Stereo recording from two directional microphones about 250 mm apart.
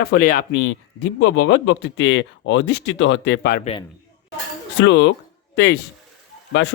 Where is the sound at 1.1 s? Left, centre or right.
Left.